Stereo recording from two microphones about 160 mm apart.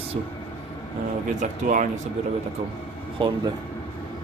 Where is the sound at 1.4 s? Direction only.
55° right (ahead or behind).